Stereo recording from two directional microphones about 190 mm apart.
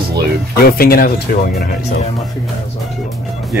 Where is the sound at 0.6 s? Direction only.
50° left (ahead or behind).